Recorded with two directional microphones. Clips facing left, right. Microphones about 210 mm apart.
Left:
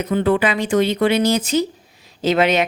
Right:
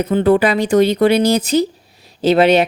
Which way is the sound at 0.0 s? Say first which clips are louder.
Right 4 dB; 35° right (ahead or behind).